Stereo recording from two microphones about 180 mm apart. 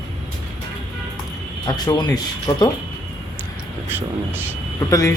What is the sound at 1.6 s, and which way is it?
A man's voice, 20° left (ahead or behind).